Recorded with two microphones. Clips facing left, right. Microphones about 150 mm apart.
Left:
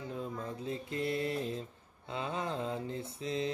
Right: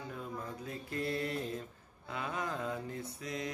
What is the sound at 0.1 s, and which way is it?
Mantra, 25° left (ahead or behind).